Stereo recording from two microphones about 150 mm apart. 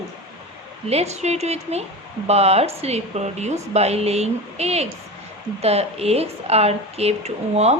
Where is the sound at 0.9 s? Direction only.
45° right (ahead or behind).